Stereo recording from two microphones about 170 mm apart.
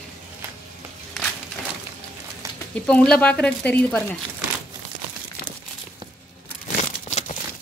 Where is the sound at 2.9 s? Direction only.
5° left (ahead or behind).